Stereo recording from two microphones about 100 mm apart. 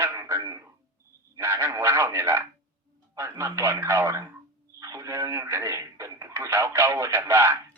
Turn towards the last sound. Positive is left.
turn(degrees=-25)  # may be behind; listen again after turning